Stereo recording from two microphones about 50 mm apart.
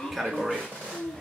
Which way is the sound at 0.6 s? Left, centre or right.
Centre.